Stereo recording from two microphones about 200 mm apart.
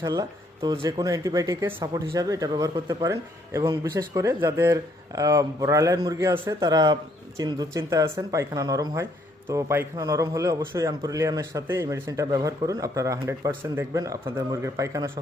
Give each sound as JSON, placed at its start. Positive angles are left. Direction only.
{"t": 0.0, "sound": "speech", "side_deg": -20}